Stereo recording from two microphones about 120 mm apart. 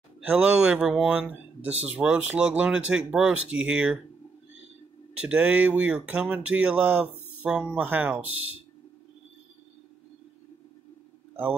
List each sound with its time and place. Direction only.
0.2 s speech: 10° right (ahead or behind)
5.2 s speech: 10° right (ahead or behind)